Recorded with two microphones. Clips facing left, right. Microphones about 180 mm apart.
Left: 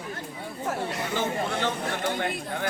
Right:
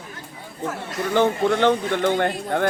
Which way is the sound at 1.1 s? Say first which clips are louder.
Right 11 dB; 60° right (ahead or behind).